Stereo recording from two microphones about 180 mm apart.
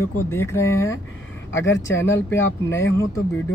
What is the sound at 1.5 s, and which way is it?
Speech, 90° left.